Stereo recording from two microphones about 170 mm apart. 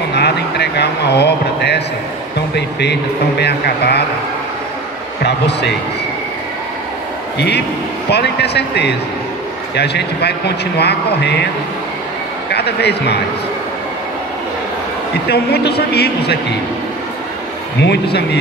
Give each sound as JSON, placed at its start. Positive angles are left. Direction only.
{"t": 0.1, "sound": "speech", "side_deg": 80}
{"t": 7.3, "sound": "speech", "side_deg": 80}
{"t": 12.5, "sound": "speech", "side_deg": 75}
{"t": 15.2, "sound": "speech", "side_deg": 70}
{"t": 17.7, "sound": "speech", "side_deg": 85}